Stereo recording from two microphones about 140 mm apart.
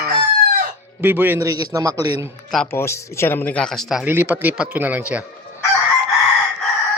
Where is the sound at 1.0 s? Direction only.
15° right (ahead or behind).